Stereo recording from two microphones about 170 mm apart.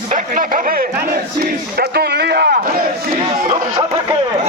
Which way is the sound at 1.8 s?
70° right (ahead or behind).